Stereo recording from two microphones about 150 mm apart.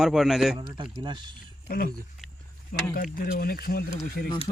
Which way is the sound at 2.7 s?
90° left.